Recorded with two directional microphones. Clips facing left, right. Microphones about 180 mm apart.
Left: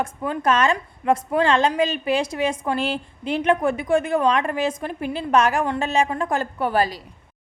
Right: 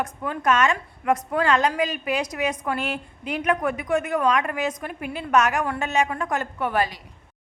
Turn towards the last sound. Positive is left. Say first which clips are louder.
# left 3 dB
turn(degrees=35)  # may be behind; listen again after turning